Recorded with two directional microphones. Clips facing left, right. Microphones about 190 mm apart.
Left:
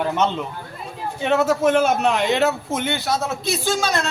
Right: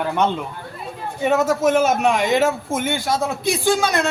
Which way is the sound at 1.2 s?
10° right (ahead or behind).